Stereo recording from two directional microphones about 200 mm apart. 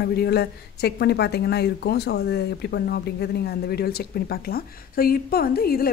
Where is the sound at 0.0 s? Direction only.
50° left (ahead or behind).